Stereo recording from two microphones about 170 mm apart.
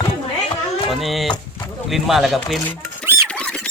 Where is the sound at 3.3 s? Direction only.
5° left (ahead or behind).